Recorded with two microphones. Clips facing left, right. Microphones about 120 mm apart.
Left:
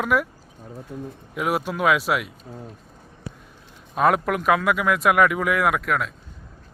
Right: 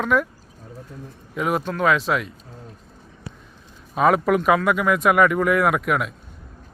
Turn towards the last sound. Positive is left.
turn(degrees=-5)  # may be behind; listen again after turning